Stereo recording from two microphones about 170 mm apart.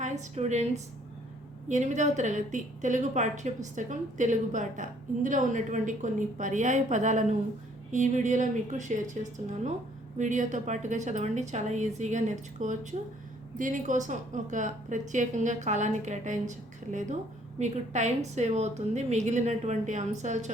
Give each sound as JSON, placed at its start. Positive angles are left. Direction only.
{"t": 0.0, "sound": "a woman's voice", "side_deg": -45}